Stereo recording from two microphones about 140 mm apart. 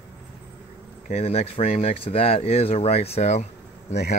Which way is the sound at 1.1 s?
45° left (ahead or behind).